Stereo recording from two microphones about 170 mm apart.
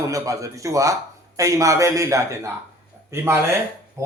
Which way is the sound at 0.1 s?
20° right (ahead or behind).